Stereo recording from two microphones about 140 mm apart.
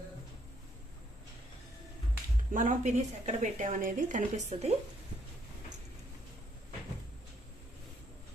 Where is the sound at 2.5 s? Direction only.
65° right (ahead or behind).